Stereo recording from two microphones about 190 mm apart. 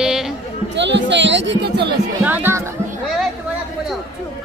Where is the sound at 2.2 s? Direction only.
10° right (ahead or behind).